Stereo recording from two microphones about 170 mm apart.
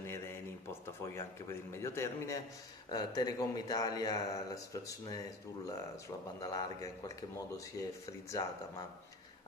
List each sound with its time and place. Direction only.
0.8 s a man's voice: 15° left (ahead or behind)